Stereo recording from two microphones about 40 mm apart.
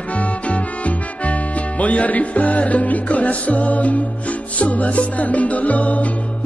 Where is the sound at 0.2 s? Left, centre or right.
Left.